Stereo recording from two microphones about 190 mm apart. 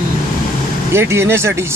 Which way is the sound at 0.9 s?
15° right (ahead or behind).